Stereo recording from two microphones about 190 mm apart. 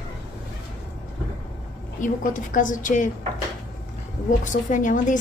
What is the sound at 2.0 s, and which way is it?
A woman's voice, 45° left (ahead or behind).